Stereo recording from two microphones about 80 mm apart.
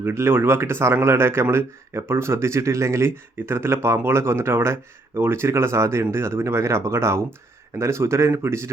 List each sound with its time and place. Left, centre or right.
0.0 s speech: right